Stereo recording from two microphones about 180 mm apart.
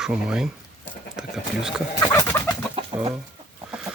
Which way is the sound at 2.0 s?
15° left (ahead or behind).